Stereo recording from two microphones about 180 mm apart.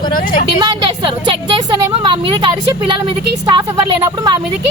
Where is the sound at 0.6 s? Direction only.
25° right (ahead or behind).